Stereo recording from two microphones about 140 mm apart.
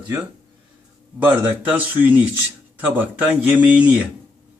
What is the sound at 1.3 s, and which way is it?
Speech, 10° right (ahead or behind).